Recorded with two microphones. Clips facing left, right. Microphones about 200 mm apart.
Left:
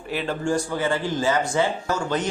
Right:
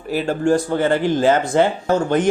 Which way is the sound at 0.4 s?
55° right (ahead or behind).